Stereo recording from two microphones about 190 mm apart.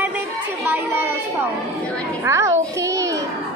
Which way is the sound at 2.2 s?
15° right (ahead or behind).